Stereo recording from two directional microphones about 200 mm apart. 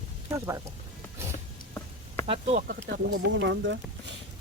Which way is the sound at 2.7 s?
60° right (ahead or behind).